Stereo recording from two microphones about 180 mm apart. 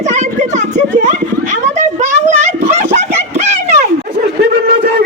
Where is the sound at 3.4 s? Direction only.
40° right (ahead or behind).